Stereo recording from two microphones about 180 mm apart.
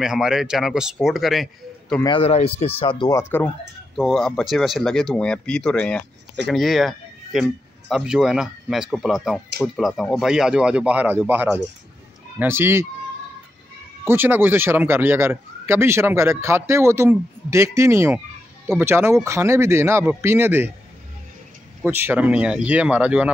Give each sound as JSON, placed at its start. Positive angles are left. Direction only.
{"t": 0.0, "sound": "speech", "side_deg": -5}
{"t": 2.0, "sound": "speech", "side_deg": 30}
{"t": 3.2, "sound": "speech", "side_deg": 15}
{"t": 3.9, "sound": "speech", "side_deg": 0}
{"t": 14.0, "sound": "speech", "side_deg": -10}
{"t": 21.8, "sound": "speech", "side_deg": -10}